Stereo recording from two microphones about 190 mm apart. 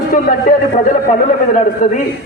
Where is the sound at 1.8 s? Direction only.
40° left (ahead or behind).